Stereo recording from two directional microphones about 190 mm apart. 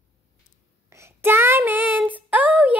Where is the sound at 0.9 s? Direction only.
15° right (ahead or behind).